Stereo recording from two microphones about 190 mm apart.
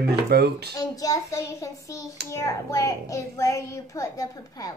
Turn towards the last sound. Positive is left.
turn(degrees=15)  # may be behind; listen again after turning